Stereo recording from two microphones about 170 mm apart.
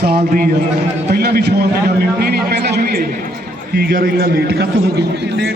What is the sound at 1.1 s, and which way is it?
A man's voice, 65° right (ahead or behind).